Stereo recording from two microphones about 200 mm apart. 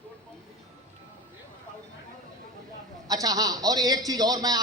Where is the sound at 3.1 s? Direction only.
20° right (ahead or behind).